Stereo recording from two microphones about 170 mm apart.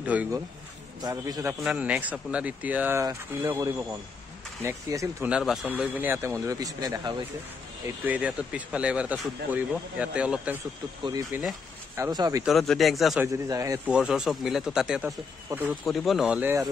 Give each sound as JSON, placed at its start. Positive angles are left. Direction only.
{"t": 0.0, "sound": "speech", "side_deg": -10}
{"t": 1.0, "sound": "speech", "side_deg": -20}
{"t": 1.6, "sound": "speech", "side_deg": -5}
{"t": 5.3, "sound": "speech", "side_deg": 0}
{"t": 8.0, "sound": "speech", "side_deg": -10}
{"t": 12.0, "sound": "speech", "side_deg": -20}
{"t": 12.4, "sound": "speech", "side_deg": 0}
{"t": 13.2, "sound": "speech", "side_deg": -20}
{"t": 13.8, "sound": "speech", "side_deg": -5}